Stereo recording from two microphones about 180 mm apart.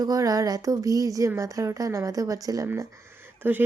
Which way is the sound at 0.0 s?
20° right (ahead or behind).